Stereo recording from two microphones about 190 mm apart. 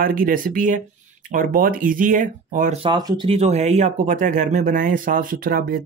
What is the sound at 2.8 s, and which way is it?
Speech, 20° right (ahead or behind).